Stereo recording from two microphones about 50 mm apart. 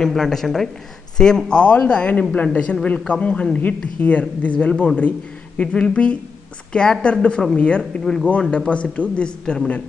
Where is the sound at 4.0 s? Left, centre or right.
Left.